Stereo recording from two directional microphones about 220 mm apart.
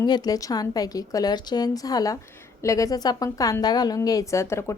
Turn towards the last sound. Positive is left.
turn(degrees=10)  # may be behind; listen again after turning